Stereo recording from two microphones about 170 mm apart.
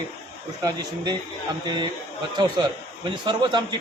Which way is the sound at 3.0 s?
25° right (ahead or behind).